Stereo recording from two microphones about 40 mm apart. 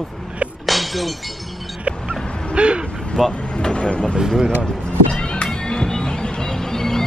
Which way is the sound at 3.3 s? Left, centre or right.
Left.